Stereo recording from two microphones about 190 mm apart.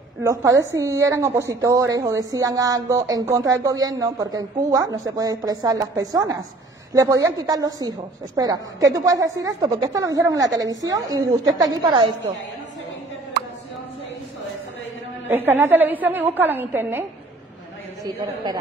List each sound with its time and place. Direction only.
0.2 s a woman's voice: 15° right (ahead or behind)
15.2 s a woman's voice: 10° right (ahead or behind)
18.0 s a woman's voice: 20° right (ahead or behind)